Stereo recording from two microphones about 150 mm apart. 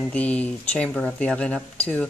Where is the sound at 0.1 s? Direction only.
10° left (ahead or behind).